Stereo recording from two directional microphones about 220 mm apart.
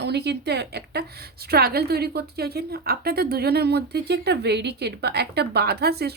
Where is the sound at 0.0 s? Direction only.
50° right (ahead or behind).